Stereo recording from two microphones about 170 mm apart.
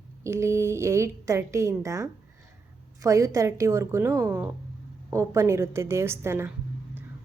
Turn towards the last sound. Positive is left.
turn(degrees=-15)  # may be behind; listen again after turning